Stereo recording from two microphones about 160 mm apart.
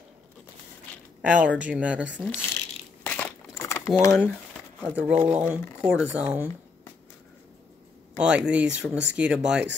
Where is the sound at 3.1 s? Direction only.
10° left (ahead or behind).